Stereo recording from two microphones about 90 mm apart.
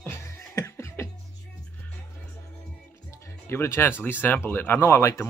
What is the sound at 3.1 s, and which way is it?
Speech, 35° left (ahead or behind).